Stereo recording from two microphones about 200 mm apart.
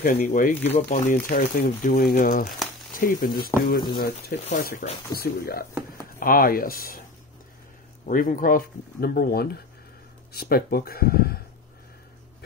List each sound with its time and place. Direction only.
0.0 s speech: 40° left (ahead or behind)
8.0 s speech: 45° left (ahead or behind)